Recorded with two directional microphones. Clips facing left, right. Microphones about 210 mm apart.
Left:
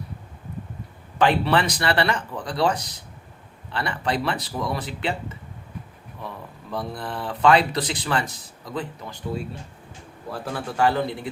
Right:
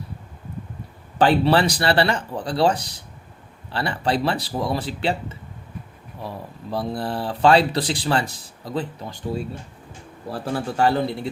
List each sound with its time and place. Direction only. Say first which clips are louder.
1.2 s speech: right 3 dB; 35° right (ahead or behind)
6.2 s speech: right 4 dB; 30° right (ahead or behind)
10.3 s speech: right 3 dB; 30° right (ahead or behind)